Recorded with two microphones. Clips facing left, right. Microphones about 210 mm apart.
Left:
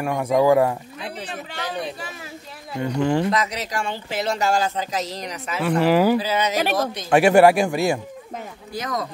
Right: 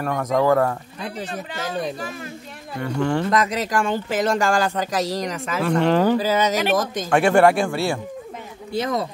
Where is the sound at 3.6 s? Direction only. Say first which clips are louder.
Right 6 dB; 50° right (ahead or behind).